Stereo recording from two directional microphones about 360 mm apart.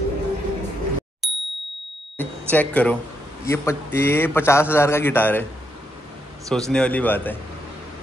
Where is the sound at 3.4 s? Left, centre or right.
Centre.